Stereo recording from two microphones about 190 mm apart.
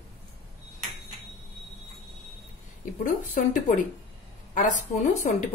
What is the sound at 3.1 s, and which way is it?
A woman's voice, 45° left (ahead or behind).